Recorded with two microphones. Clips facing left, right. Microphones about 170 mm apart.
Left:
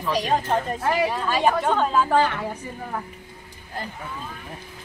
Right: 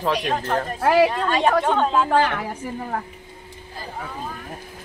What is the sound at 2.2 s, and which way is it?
Speech, 65° right (ahead or behind).